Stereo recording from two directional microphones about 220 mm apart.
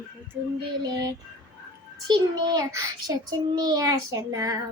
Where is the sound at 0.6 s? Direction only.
20° right (ahead or behind).